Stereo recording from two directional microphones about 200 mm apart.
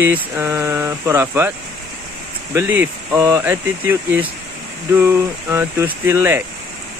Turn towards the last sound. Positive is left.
turn(degrees=-10)  # may be behind; listen again after turning